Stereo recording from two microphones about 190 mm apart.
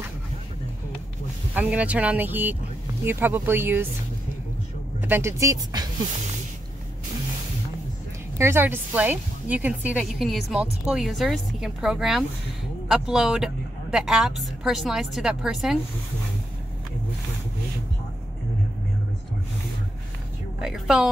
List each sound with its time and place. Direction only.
1.5 s speech: 10° right (ahead or behind)
5.0 s speech: 10° right (ahead or behind)
8.4 s speech: 10° right (ahead or behind)
20.6 s speech: 5° right (ahead or behind)